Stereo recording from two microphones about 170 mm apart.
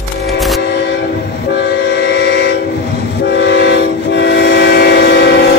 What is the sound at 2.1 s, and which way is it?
Train, 80° left.